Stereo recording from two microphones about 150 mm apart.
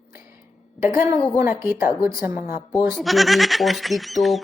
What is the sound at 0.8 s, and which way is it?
A woman's voice, 15° right (ahead or behind).